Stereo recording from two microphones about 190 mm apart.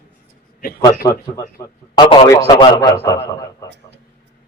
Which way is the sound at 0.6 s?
50° left (ahead or behind).